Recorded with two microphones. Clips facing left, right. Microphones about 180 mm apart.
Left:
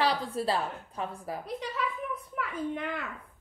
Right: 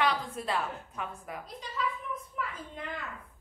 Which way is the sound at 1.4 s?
65° left (ahead or behind).